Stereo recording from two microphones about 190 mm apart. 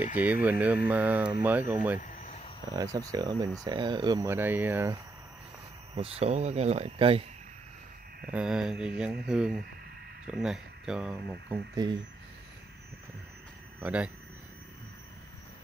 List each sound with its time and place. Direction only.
0.1 s speech: 10° right (ahead or behind)
2.0 s a sound: 40° left (ahead or behind)
2.7 s speech: 20° right (ahead or behind)
5.9 s speech: 30° right (ahead or behind)
8.3 s speech: 5° right (ahead or behind)
11.7 s speech: 20° right (ahead or behind)
13.7 s speech: 5° right (ahead or behind)